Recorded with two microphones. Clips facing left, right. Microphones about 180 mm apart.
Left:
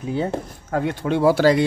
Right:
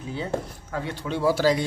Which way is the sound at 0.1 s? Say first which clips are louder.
Left 5 dB; 50° left (ahead or behind).